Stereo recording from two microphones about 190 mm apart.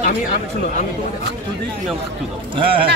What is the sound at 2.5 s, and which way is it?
Speech, 25° right (ahead or behind).